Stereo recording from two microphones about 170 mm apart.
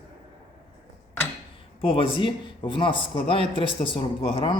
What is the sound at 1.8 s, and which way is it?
A man's voice, 35° left (ahead or behind).